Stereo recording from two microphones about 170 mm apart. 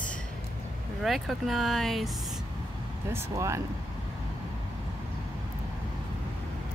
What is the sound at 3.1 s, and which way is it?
Speech, 15° right (ahead or behind).